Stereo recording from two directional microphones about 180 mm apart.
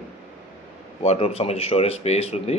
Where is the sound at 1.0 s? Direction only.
35° left (ahead or behind).